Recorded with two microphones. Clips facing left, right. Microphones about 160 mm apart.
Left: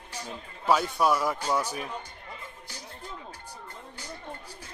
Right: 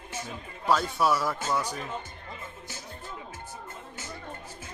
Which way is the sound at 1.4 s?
10° left (ahead or behind).